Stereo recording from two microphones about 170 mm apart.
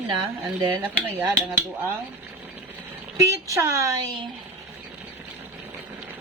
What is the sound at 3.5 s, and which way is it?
Dishes, 15° right (ahead or behind).